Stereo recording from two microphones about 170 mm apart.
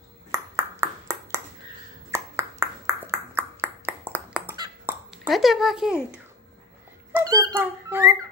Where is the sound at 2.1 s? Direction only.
20° right (ahead or behind).